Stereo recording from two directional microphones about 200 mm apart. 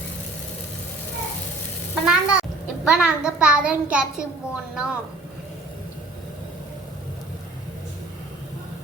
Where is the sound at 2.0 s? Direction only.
5° right (ahead or behind).